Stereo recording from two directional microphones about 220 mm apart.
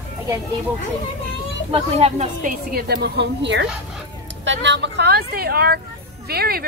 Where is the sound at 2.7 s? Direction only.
45° right (ahead or behind).